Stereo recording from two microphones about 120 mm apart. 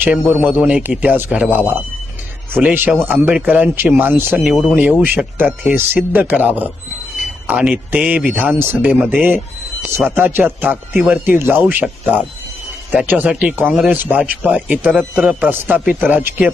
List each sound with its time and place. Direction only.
0.0 s speech: 15° right (ahead or behind)
10.2 s speech: 15° right (ahead or behind)